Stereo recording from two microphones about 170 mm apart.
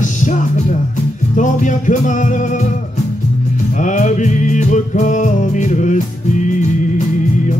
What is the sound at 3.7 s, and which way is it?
Music, 45° left (ahead or behind).